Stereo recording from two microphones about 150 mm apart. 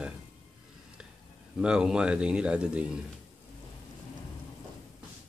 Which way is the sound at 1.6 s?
5° right (ahead or behind).